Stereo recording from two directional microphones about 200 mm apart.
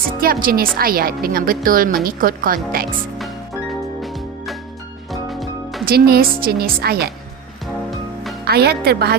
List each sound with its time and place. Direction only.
0.2 s a woman's voice: 45° right (ahead or behind)
4.0 s music: centre (ahead or behind)
5.8 s a woman's voice: 50° right (ahead or behind)
7.9 s music: centre (ahead or behind)
8.4 s a woman's voice: 50° right (ahead or behind)